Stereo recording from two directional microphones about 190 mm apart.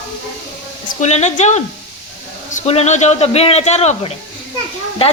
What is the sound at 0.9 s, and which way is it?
Speech, 40° left (ahead or behind).